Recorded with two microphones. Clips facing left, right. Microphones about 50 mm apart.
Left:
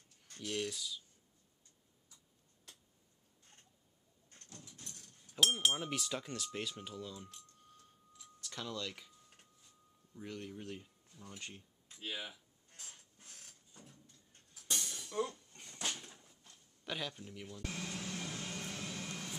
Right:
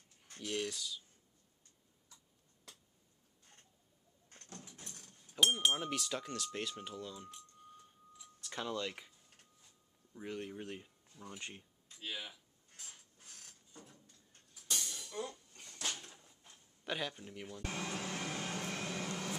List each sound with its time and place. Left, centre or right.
0.3 s speech: centre
4.3 s vehicle: right
5.3 s speech: centre; by 9.1 s right
10.1 s speech: centre
11.9 s speech: centre
13.2 s printer: centre
15.1 s speech: centre
15.8 s a sound: centre
17.7 s vehicle: right